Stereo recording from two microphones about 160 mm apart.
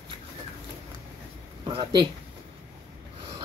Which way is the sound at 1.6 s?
30° right (ahead or behind).